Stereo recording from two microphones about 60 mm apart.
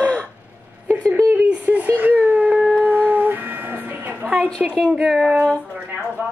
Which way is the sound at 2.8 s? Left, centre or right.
Right.